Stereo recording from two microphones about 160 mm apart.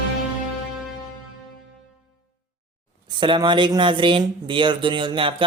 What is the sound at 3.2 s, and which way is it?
Speech, 30° right (ahead or behind).